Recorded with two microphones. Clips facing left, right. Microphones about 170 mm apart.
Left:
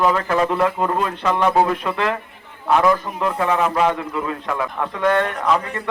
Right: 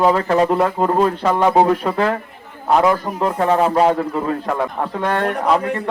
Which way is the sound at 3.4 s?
35° right (ahead or behind).